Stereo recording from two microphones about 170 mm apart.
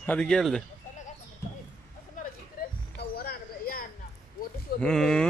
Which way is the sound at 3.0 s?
65° left (ahead or behind).